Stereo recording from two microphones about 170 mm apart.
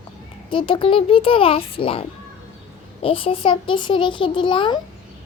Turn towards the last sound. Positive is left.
turn(degrees=30)  # may be behind; listen again after turning